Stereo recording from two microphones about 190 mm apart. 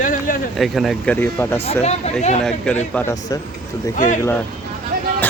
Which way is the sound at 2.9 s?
15° left (ahead or behind).